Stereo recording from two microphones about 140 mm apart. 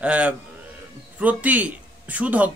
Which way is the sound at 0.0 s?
10° right (ahead or behind).